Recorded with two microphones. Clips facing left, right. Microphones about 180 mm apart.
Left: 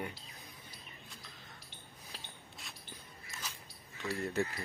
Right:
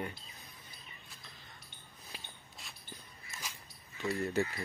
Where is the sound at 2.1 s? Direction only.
Centre (ahead or behind).